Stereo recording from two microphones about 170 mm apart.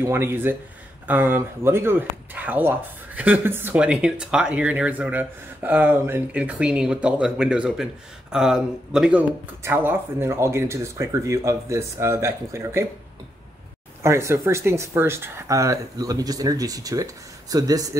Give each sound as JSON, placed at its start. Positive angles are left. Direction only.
{"t": 0.0, "sound": "speech", "side_deg": -15}
{"t": 9.6, "sound": "speech", "side_deg": -15}
{"t": 14.0, "sound": "speech", "side_deg": -15}